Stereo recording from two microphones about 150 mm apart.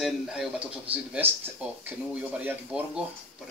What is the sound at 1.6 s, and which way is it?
Speech, 10° right (ahead or behind).